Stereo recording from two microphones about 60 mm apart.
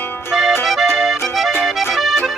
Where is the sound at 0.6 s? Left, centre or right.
Centre.